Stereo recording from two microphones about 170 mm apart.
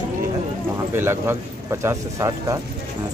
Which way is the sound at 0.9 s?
15° right (ahead or behind).